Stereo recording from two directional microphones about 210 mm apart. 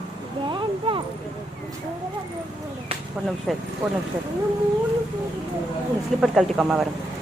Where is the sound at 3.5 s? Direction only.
Centre (ahead or behind).